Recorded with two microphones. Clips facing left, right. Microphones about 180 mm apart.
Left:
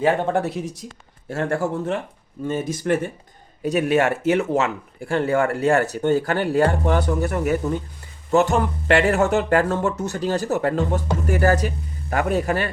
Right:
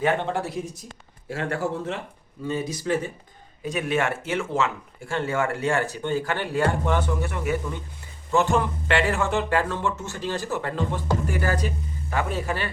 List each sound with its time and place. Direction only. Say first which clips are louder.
0.3 s speech: left 5 dB; 70° left (ahead or behind)
1.4 s speech: left 4 dB; 50° left (ahead or behind)
3.6 s speech: left 6 dB; 40° left (ahead or behind)